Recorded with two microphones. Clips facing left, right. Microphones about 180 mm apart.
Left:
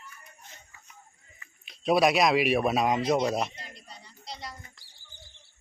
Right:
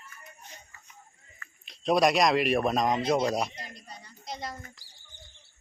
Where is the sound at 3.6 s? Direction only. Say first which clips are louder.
Right 3 dB; 45° right (ahead or behind).